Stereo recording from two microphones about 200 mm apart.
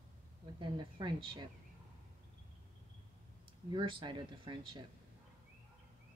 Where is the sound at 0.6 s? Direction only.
25° right (ahead or behind).